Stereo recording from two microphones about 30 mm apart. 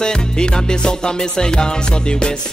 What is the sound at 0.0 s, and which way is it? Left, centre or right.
Music, left.